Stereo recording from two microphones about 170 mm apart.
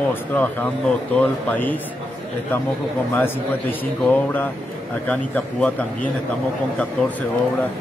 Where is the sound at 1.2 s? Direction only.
10° left (ahead or behind).